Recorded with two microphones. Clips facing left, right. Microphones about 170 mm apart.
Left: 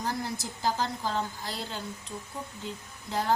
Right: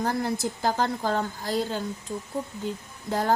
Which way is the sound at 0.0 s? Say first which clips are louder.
Right 7 dB; 55° right (ahead or behind).